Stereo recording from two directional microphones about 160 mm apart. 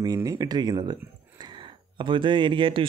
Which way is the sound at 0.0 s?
20° right (ahead or behind).